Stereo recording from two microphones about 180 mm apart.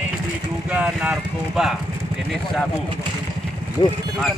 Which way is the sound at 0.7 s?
5° right (ahead or behind).